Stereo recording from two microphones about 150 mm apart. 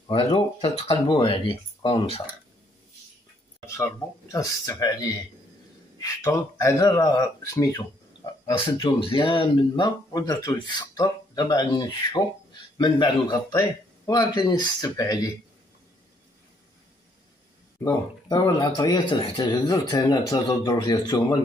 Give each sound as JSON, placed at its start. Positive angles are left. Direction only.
{"t": 0.1, "sound": "speech", "side_deg": 35}
{"t": 3.6, "sound": "speech", "side_deg": 20}
{"t": 8.5, "sound": "speech", "side_deg": 30}
{"t": 17.8, "sound": "speech", "side_deg": 25}